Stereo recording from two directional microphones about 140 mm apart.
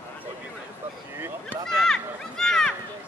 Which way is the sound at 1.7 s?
5° left (ahead or behind).